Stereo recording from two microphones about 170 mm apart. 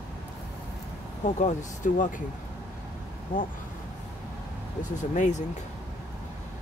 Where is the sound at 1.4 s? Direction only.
45° left (ahead or behind).